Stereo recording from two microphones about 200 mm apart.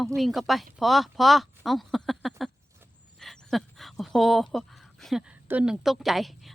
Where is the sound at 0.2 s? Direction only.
Centre (ahead or behind).